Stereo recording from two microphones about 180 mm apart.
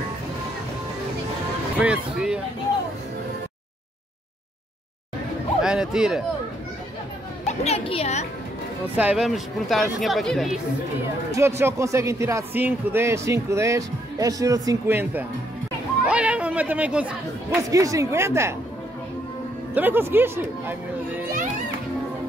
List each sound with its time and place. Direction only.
1.8 s speech: 5° right (ahead or behind)
5.6 s music: 5° right (ahead or behind)
7.4 s a woman's voice: 35° left (ahead or behind)
8.8 s speech: 10° right (ahead or behind)
11.3 s speech: 15° right (ahead or behind)
16.1 s chatter: 5° right (ahead or behind)
17.6 s speech: 20° right (ahead or behind)
19.7 s speech: 10° right (ahead or behind)